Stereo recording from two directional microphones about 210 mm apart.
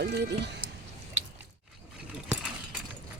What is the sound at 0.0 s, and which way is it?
Speech, 55° right (ahead or behind).